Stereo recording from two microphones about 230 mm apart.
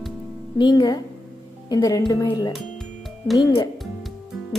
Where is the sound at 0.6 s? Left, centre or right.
Centre.